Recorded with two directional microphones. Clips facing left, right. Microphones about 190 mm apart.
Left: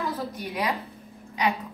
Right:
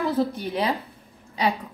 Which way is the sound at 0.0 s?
30° right (ahead or behind).